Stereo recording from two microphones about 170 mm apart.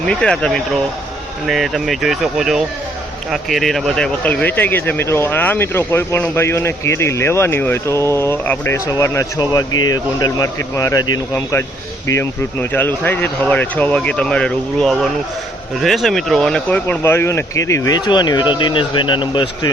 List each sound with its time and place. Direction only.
0.0 s speech: 5° left (ahead or behind); by 19.7 s 30° left (ahead or behind)